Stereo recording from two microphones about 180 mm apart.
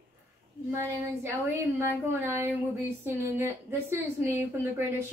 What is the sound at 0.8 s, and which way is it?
Speech, 15° right (ahead or behind).